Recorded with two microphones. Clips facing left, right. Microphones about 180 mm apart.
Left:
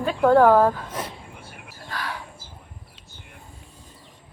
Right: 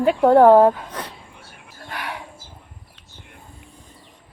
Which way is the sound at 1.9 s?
20° right (ahead or behind).